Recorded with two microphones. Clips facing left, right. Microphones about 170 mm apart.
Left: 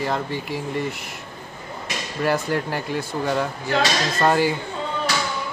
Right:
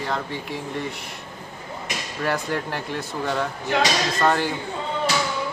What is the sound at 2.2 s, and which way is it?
Speech, 5° left (ahead or behind).